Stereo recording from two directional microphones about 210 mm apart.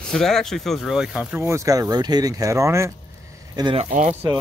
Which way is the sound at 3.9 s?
40° right (ahead or behind).